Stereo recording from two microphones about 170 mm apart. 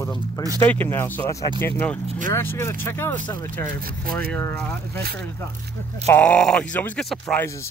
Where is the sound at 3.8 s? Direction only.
60° right (ahead or behind).